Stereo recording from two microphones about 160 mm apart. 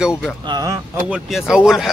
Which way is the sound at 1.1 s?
5° right (ahead or behind).